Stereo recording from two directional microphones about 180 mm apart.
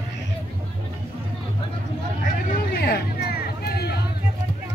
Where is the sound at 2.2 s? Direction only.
50° left (ahead or behind).